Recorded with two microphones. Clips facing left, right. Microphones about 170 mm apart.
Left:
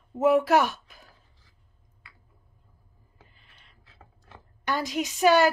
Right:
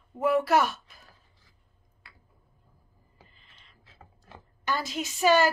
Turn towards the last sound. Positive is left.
turn(degrees=15)  # may be behind; listen again after turning